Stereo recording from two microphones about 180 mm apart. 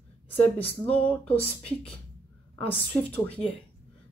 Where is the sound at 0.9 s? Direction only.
5° left (ahead or behind).